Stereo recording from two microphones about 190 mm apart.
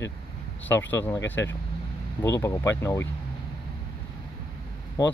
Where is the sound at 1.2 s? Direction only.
70° left (ahead or behind).